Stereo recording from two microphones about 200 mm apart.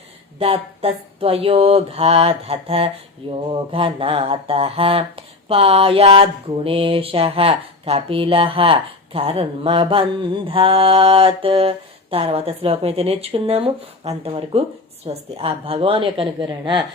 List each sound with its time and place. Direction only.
0.3 s speech: 30° right (ahead or behind)